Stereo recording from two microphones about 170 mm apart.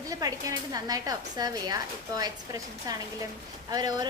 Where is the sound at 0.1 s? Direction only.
20° right (ahead or behind).